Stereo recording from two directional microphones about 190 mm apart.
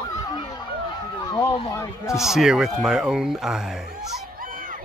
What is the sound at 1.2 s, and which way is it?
Speech, 25° left (ahead or behind).